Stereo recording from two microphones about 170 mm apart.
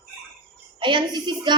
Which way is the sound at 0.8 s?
25° right (ahead or behind).